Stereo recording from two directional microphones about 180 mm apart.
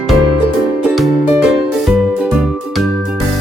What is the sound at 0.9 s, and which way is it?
Music, 5° right (ahead or behind).